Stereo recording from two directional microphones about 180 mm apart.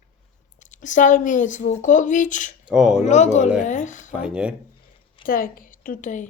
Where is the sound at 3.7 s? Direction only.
45° left (ahead or behind).